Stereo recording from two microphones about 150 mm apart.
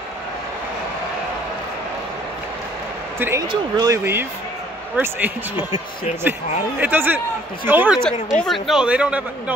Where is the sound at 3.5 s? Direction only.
25° right (ahead or behind).